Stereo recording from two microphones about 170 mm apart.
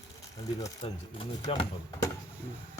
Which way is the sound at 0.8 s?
35° left (ahead or behind).